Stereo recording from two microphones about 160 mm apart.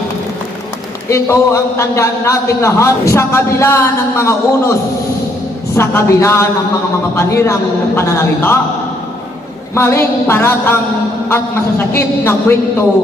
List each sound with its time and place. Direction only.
1.1 s a man's voice: 15° left (ahead or behind)
5.7 s a man's voice: 15° left (ahead or behind)
9.7 s a man's voice: 15° left (ahead or behind)
11.9 s a man's voice: 15° left (ahead or behind)